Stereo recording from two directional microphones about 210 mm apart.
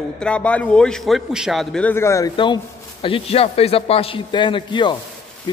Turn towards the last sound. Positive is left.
turn(degrees=20)  # may be behind; listen again after turning